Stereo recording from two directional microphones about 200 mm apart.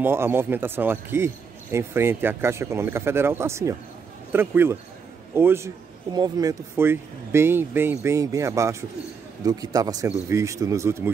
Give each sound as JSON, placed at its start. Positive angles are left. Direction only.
{"t": 0.0, "sound": "speech", "side_deg": -10}